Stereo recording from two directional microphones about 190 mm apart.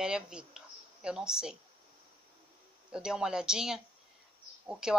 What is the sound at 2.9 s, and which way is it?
Speech, 5° right (ahead or behind).